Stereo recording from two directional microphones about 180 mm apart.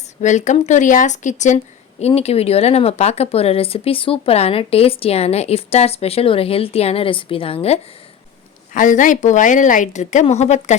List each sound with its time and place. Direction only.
0.2 s speech: 40° left (ahead or behind)
8.7 s a woman's voice: 45° left (ahead or behind)